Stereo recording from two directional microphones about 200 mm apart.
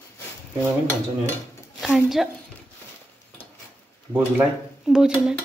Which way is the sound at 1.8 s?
Centre (ahead or behind).